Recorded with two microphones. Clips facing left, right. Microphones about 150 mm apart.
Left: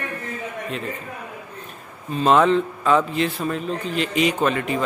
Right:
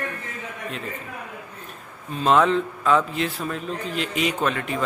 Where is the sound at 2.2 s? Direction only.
Centre (ahead or behind).